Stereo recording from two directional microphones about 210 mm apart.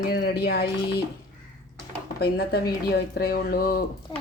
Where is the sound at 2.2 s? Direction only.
50° left (ahead or behind).